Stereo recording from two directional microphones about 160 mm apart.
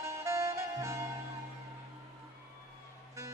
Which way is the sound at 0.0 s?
15° right (ahead or behind).